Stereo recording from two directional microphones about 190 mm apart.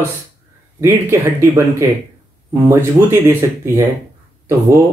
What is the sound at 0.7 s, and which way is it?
Speech, 15° right (ahead or behind).